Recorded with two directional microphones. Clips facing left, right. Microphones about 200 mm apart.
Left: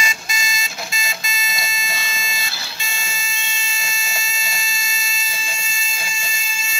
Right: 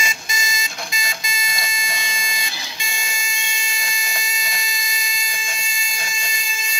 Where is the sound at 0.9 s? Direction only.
15° right (ahead or behind).